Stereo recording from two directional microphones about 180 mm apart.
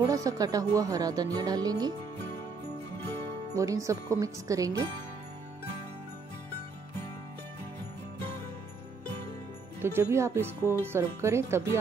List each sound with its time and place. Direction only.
0.0 s speech: 20° right (ahead or behind)
3.5 s speech: 20° right (ahead or behind)
9.8 s speech: 15° right (ahead or behind)